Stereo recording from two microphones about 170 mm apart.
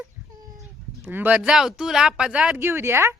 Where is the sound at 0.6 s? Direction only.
10° right (ahead or behind).